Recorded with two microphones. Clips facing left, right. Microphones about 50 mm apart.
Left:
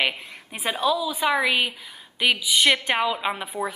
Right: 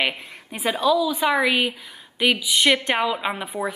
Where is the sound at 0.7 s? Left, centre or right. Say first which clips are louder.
Right 4 dB; centre.